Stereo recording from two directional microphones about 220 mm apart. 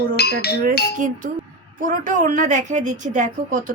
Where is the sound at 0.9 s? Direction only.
35° right (ahead or behind).